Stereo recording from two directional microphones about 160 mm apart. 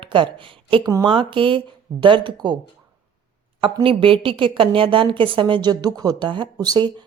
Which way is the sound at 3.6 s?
35° right (ahead or behind).